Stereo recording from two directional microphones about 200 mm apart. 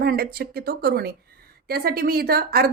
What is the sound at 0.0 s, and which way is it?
A woman's voice, 50° right (ahead or behind).